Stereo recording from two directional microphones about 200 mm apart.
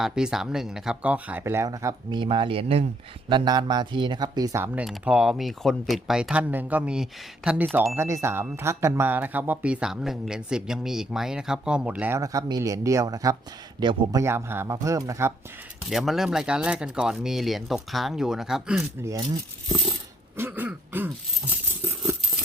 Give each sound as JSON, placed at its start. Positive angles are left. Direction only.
{"t": 0.0, "sound": "speech", "side_deg": -5}
{"t": 15.8, "sound": "speech", "side_deg": 0}
{"t": 19.0, "sound": "speech", "side_deg": -15}
{"t": 20.3, "sound": "throat clearing", "side_deg": -10}